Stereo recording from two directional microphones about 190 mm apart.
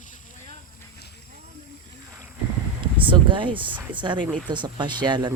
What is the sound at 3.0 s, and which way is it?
Speech, 25° right (ahead or behind).